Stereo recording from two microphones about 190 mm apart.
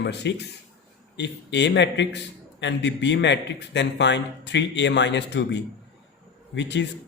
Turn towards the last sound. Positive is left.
turn(degrees=70)  # may be behind; listen again after turning